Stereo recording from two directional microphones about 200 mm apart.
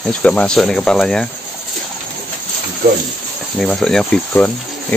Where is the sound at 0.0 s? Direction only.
5° left (ahead or behind).